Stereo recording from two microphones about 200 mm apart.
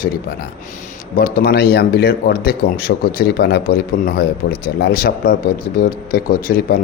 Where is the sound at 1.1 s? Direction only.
50° left (ahead or behind).